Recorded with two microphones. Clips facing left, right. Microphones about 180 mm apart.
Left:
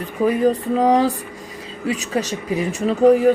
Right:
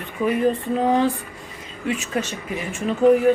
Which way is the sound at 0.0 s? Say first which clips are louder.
Left 3 dB; 40° left (ahead or behind).